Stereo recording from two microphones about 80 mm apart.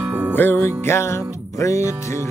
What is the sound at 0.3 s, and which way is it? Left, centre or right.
Music, left.